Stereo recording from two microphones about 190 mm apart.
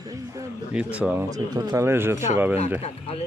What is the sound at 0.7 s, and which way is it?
Speech, 5° right (ahead or behind).